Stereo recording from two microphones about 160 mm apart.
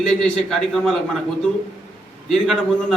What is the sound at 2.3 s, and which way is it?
Speech, centre (ahead or behind).